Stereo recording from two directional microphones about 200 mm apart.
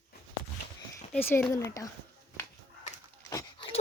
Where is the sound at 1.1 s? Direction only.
10° left (ahead or behind).